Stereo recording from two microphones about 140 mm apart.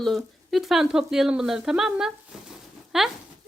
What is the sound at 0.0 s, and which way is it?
Speech, centre (ahead or behind).